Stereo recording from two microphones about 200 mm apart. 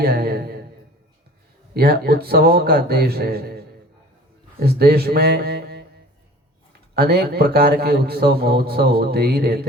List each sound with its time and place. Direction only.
0.0 s a sound: 50° right (ahead or behind)
1.7 s a man's voice: 50° right (ahead or behind)
4.6 s a man's voice: 50° right (ahead or behind)
6.9 s a man's voice: 50° right (ahead or behind)